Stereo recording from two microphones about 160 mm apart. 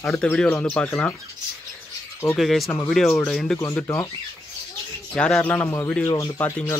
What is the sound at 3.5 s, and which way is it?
Speech, 20° left (ahead or behind).